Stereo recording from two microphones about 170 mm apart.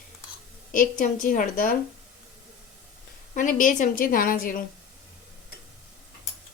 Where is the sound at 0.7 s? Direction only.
50° left (ahead or behind).